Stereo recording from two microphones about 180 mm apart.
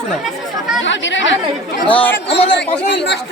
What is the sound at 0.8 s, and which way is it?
Speech, 90° left.